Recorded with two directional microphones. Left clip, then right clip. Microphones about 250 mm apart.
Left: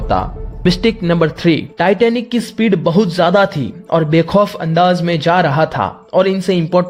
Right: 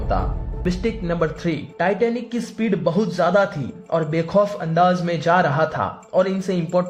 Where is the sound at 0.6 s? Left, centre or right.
Left.